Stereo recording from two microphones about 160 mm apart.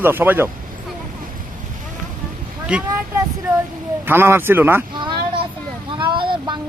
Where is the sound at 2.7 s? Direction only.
5° right (ahead or behind).